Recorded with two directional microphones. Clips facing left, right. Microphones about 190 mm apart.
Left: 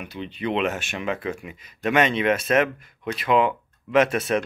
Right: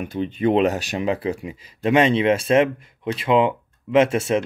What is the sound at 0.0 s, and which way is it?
Speech, 45° right (ahead or behind).